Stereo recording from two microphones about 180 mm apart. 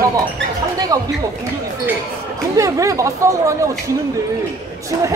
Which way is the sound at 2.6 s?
15° right (ahead or behind).